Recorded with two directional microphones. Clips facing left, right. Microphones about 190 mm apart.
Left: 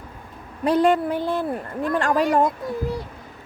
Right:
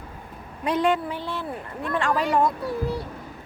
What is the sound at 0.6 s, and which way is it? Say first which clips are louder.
A woman's voice: left 5 dB; 35° left (ahead or behind).